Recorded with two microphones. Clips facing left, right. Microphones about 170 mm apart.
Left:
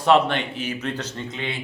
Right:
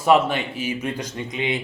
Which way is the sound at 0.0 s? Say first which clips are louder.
Even; 5° right (ahead or behind).